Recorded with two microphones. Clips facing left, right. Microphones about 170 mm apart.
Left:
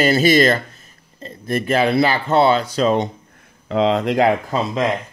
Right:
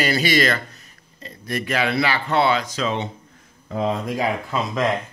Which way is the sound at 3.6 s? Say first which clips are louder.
Left 6 dB; 80° left.